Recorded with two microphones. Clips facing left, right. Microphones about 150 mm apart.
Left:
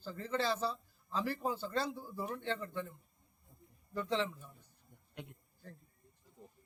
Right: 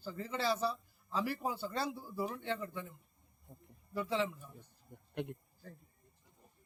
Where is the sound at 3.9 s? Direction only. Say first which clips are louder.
Even; 10° right (ahead or behind).